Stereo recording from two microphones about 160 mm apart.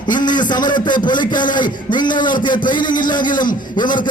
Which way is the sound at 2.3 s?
55° left (ahead or behind).